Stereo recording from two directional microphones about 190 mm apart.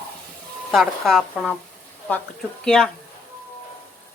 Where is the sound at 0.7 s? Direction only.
Centre (ahead or behind).